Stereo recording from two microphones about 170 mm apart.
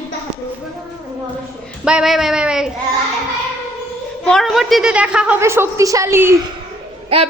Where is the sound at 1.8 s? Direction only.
5° right (ahead or behind).